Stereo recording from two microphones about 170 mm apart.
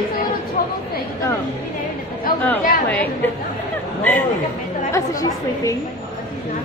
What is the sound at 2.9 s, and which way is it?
Speech, 10° left (ahead or behind).